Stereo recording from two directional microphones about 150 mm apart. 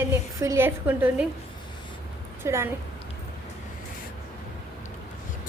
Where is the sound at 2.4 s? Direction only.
15° right (ahead or behind).